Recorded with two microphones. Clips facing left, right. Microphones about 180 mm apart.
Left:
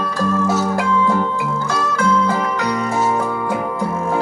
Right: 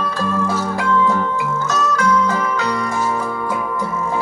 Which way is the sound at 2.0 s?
15° left (ahead or behind).